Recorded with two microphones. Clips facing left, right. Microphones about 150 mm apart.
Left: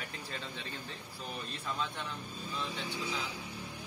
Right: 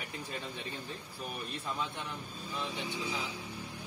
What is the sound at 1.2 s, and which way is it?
Speech, 15° right (ahead or behind).